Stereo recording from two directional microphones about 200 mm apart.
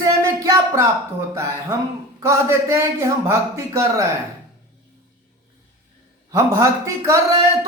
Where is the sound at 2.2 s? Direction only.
15° right (ahead or behind).